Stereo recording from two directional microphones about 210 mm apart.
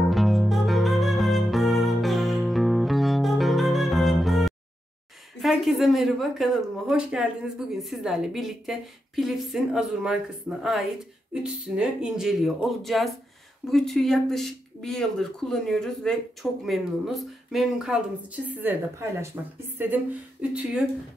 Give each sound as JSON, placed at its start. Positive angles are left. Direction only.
{"t": 0.0, "sound": "music", "side_deg": 0}
{"t": 5.4, "sound": "a woman's voice", "side_deg": 0}